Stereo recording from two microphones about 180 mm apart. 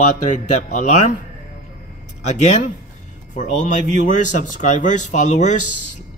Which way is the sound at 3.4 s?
45° left (ahead or behind).